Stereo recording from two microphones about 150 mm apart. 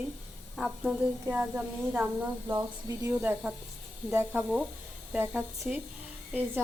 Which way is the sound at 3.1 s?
10° right (ahead or behind).